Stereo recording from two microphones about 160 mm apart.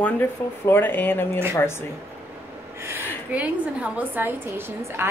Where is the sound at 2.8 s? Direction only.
10° right (ahead or behind).